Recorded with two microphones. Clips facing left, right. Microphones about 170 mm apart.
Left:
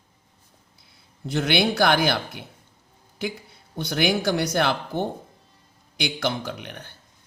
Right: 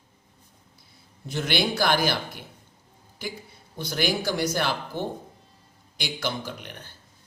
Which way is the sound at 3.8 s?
60° left (ahead or behind).